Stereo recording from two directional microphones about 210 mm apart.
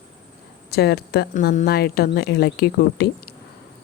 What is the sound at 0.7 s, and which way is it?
Speech, 50° left (ahead or behind).